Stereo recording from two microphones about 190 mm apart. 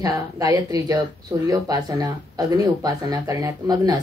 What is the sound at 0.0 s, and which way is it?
A woman's voice, 20° right (ahead or behind).